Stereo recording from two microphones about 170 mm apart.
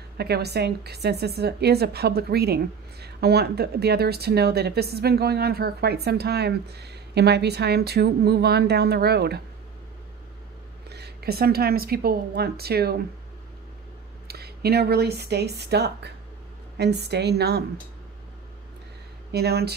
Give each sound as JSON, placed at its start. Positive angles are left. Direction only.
{"t": 0.2, "sound": "a woman's voice", "side_deg": -70}
{"t": 10.9, "sound": "a woman's voice", "side_deg": -70}
{"t": 14.2, "sound": "a woman's voice", "side_deg": -70}
{"t": 19.3, "sound": "a woman's voice", "side_deg": -70}